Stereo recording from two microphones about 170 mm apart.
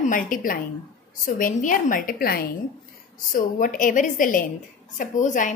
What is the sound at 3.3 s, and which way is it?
A woman's voice, 55° left (ahead or behind).